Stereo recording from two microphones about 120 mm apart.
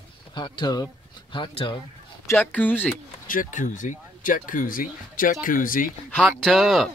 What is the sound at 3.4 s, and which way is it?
Speech, 90° left.